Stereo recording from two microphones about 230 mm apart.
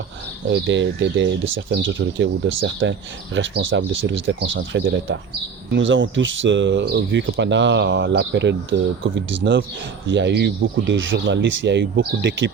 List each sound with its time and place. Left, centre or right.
0.4 s speech: right